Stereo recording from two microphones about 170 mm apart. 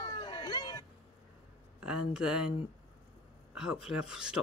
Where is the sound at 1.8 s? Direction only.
5° right (ahead or behind).